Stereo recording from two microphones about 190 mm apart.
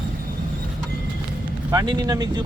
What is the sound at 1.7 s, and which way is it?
Speech, 20° right (ahead or behind).